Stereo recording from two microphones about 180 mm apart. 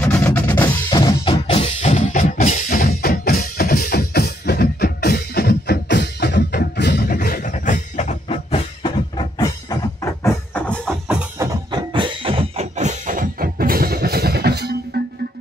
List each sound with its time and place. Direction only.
0.0 s percussion: 10° left (ahead or behind)
0.8 s music: 25° left (ahead or behind)
1.5 s music: 35° left (ahead or behind)
10.2 s music: 10° left (ahead or behind)
11.3 s music: 25° right (ahead or behind); by 14.8 s 65° right (ahead or behind)